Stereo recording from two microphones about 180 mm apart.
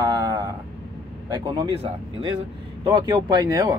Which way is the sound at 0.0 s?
20° right (ahead or behind).